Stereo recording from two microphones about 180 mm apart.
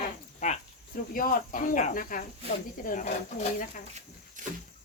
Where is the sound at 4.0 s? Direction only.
45° right (ahead or behind).